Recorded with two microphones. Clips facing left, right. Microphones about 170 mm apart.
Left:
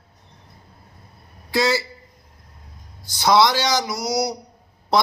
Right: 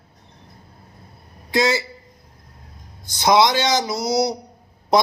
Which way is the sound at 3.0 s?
20° right (ahead or behind).